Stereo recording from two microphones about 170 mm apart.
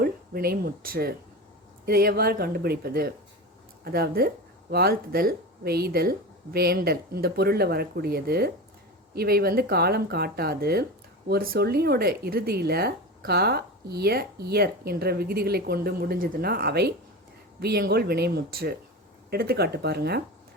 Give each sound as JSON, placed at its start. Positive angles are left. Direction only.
{"t": 0.0, "sound": "speech", "side_deg": -65}